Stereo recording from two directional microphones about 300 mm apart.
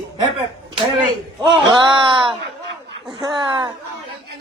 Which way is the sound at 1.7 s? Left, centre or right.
Centre.